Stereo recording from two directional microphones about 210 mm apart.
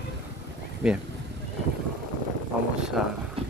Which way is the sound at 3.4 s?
25° right (ahead or behind).